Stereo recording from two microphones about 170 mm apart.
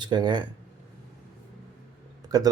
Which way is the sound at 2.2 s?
20° right (ahead or behind).